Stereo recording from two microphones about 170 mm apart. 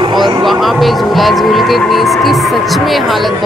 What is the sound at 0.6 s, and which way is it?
Speech, centre (ahead or behind).